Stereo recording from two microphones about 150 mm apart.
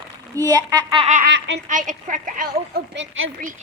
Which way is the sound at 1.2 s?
60° right (ahead or behind).